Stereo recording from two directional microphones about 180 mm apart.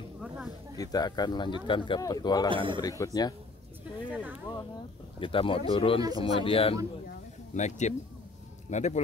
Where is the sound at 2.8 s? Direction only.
20° left (ahead or behind).